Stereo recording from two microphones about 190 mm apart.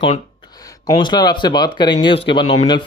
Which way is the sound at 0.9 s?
20° left (ahead or behind).